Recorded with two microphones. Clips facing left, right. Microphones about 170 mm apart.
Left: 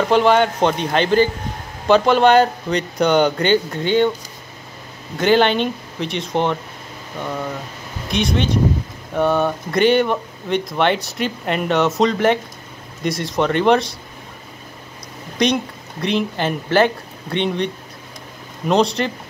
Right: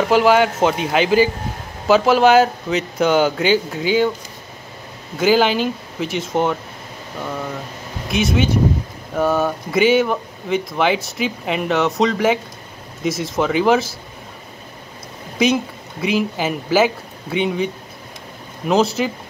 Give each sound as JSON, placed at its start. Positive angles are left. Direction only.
{"t": 0.0, "sound": "speech", "side_deg": -5}
{"t": 5.1, "sound": "speech", "side_deg": -5}
{"t": 8.1, "sound": "speech", "side_deg": -5}
{"t": 15.3, "sound": "speech", "side_deg": -5}
{"t": 18.7, "sound": "speech", "side_deg": -5}